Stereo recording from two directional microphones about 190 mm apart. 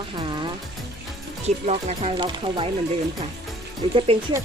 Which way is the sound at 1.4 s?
35° right (ahead or behind).